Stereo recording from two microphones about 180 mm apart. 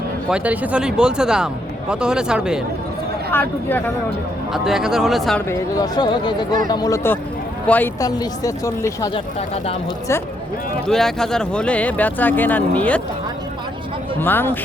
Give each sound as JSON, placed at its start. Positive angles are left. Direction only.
{"t": 0.3, "sound": "speech", "side_deg": -5}
{"t": 3.3, "sound": "speech", "side_deg": 10}
{"t": 4.5, "sound": "speech", "side_deg": 0}
{"t": 5.5, "sound": "speech", "side_deg": 20}
{"t": 8.0, "sound": "speech", "side_deg": 20}
{"t": 10.8, "sound": "speech", "side_deg": 0}
{"t": 14.2, "sound": "speech", "side_deg": 10}